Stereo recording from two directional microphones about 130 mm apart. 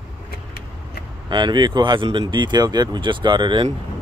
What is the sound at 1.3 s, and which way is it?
Speech, 35° right (ahead or behind).